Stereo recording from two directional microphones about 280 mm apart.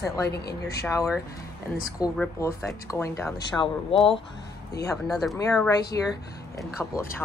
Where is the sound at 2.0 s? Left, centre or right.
Centre.